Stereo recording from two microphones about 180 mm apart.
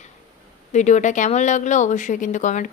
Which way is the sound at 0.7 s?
40° left (ahead or behind).